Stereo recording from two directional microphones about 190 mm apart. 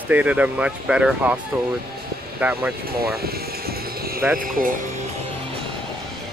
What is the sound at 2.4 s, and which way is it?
Speech, 5° right (ahead or behind).